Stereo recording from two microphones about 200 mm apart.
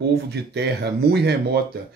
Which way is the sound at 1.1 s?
55° right (ahead or behind).